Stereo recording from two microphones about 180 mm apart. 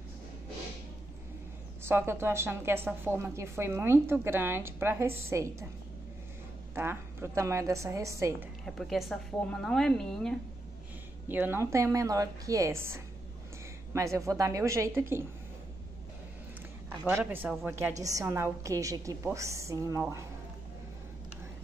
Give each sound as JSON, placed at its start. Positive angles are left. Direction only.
{"t": 1.8, "sound": "a woman's voice", "side_deg": -15}
{"t": 6.7, "sound": "a woman's voice", "side_deg": -15}
{"t": 8.6, "sound": "a woman's voice", "side_deg": 0}
{"t": 11.2, "sound": "a woman's voice", "side_deg": -10}
{"t": 17.0, "sound": "a woman's voice", "side_deg": -10}